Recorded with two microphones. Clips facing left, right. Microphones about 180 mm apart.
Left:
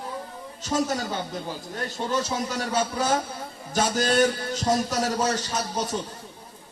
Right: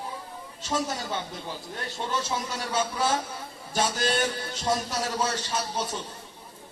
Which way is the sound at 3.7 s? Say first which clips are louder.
Left 3 dB; 40° left (ahead or behind).